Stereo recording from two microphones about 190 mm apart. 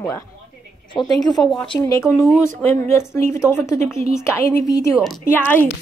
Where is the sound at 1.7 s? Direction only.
15° left (ahead or behind).